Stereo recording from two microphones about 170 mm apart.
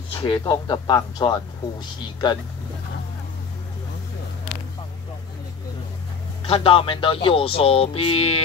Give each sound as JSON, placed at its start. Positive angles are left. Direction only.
{"t": 0.1, "sound": "speech", "side_deg": 25}
{"t": 6.4, "sound": "speech", "side_deg": 35}